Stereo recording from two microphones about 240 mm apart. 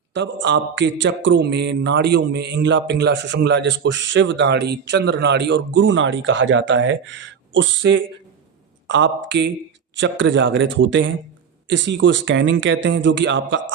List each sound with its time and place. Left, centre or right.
0.1 s a man's voice: right